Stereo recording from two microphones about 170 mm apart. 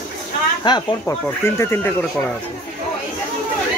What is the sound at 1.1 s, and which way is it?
Speech, 15° left (ahead or behind).